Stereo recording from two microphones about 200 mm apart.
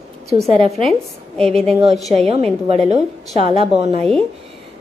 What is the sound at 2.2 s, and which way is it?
A woman's voice, 30° right (ahead or behind).